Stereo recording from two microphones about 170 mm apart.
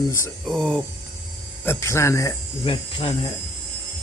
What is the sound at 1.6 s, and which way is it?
Speech, 15° left (ahead or behind).